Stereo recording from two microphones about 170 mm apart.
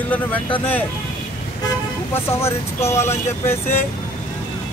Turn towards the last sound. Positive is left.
turn(degrees=15)  # may be behind; listen again after turning